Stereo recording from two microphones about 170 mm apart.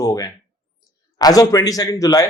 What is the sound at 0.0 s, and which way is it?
Speech, 20° left (ahead or behind).